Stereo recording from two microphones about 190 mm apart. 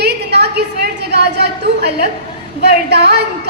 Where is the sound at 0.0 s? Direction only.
60° right (ahead or behind).